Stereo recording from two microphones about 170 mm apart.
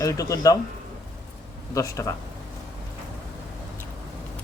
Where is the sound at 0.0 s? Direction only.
20° left (ahead or behind).